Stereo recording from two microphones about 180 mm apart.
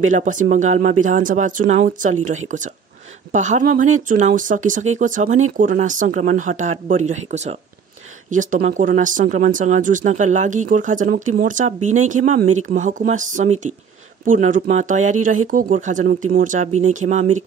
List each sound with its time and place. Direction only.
0.1 s speech: 45° right (ahead or behind)